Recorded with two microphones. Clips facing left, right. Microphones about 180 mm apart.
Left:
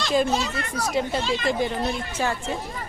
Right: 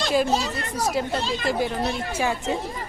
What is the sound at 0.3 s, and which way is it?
Speech, 35° right (ahead or behind).